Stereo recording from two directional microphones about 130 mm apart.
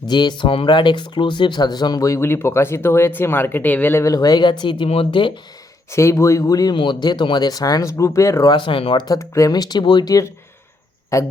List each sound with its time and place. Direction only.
0.1 s speech: 35° left (ahead or behind)
5.9 s speech: 20° left (ahead or behind)
8.5 s speech: 40° left (ahead or behind); by 11.3 s 20° left (ahead or behind)